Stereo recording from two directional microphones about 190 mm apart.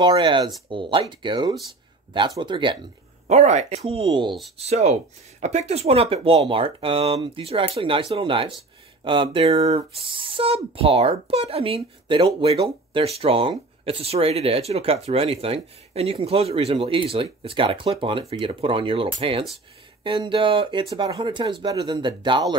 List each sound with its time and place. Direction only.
0.0 s speech: 25° right (ahead or behind)
3.3 s speech: 35° right (ahead or behind)